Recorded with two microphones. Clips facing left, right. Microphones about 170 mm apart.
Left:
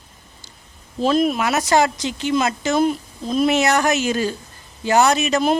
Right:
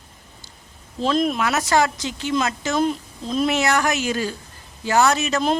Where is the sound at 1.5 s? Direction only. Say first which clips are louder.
Left 2 dB; 15° left (ahead or behind).